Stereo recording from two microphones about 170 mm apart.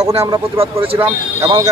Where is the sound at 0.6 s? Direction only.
35° right (ahead or behind).